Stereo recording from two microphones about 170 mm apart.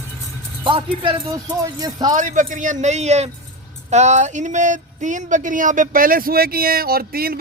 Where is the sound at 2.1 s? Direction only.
50° right (ahead or behind).